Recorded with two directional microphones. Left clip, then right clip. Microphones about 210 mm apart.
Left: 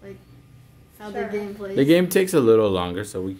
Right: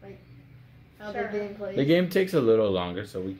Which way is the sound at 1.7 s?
30° left (ahead or behind).